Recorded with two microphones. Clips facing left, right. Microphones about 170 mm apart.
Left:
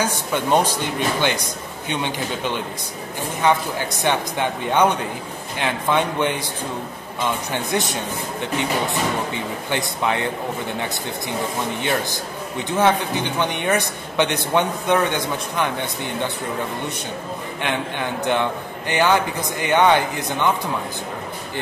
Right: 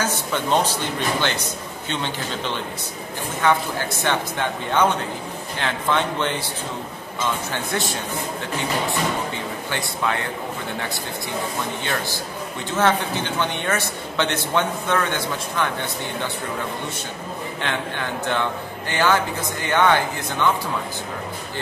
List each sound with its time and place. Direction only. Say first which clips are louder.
0.0 s speech: left 2 dB; 15° left (ahead or behind)
9.7 s speech: left 3 dB; 20° left (ahead or behind)
11.8 s speech: left 3 dB; 20° left (ahead or behind)
17.6 s speech: left 3 dB; 15° left (ahead or behind)